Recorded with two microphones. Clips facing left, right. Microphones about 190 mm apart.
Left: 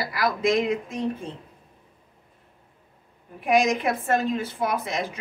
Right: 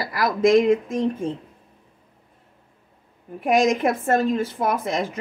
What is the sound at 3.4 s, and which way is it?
Speech, 45° right (ahead or behind).